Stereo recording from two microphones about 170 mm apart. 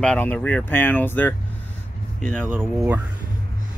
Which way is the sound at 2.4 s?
10° right (ahead or behind).